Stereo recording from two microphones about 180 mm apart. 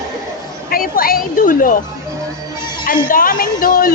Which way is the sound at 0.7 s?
50° left (ahead or behind).